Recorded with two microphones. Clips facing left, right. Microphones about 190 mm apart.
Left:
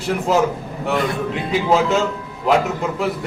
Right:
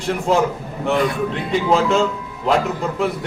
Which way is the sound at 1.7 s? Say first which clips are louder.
Even; 5° left (ahead or behind).